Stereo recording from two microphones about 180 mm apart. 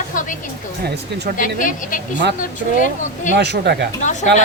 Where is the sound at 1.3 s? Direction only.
45° left (ahead or behind).